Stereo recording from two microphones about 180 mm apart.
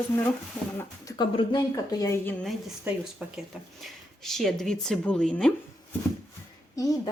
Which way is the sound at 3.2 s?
5° right (ahead or behind).